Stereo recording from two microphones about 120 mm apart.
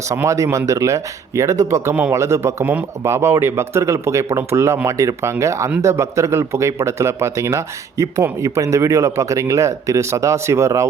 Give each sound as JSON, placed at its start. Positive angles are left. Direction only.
{"t": 0.1, "sound": "speech", "side_deg": -25}